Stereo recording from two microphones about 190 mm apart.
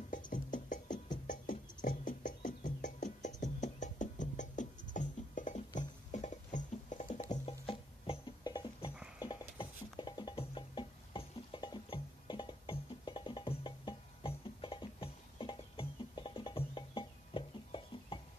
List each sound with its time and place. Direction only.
0.1 s music: 45° left (ahead or behind)
7.6 s music: 30° left (ahead or behind)